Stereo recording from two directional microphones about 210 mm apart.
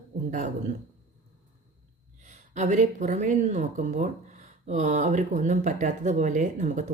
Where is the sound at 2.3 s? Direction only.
35° right (ahead or behind).